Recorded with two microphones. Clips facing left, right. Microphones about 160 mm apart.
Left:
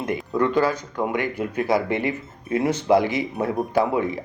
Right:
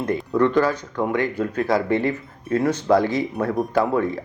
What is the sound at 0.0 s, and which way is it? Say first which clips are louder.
Speech: right 3 dB; 15° left (ahead or behind).